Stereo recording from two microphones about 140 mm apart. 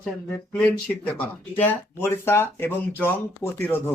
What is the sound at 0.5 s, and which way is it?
Speech, 5° left (ahead or behind).